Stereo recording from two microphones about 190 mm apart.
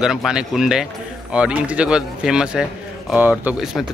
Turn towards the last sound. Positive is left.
turn(degrees=-5)  # may be behind; listen again after turning